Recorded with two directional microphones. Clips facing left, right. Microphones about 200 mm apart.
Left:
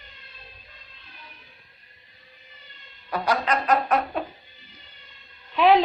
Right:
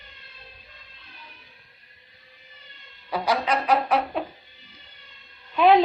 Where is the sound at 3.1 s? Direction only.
10° right (ahead or behind).